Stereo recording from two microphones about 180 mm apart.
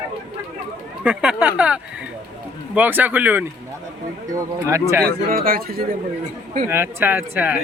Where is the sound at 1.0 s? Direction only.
5° right (ahead or behind).